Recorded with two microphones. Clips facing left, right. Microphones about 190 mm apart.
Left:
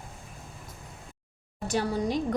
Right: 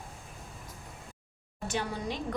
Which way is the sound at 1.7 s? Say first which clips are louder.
Left 6 dB; 40° left (ahead or behind).